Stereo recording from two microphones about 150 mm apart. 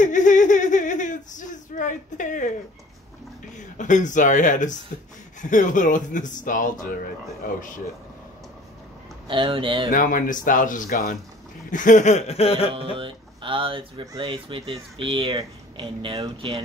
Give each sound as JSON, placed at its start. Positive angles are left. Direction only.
{"t": 0.0, "sound": "a sound", "side_deg": 55}
{"t": 3.5, "sound": "speech", "side_deg": 55}
{"t": 9.3, "sound": "speech", "side_deg": -35}
{"t": 9.8, "sound": "speech", "side_deg": 65}
{"t": 11.7, "sound": "chuckle", "side_deg": 60}
{"t": 12.9, "sound": "speech", "side_deg": -35}